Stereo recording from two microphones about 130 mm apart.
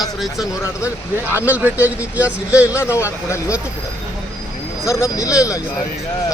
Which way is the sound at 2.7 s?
20° left (ahead or behind).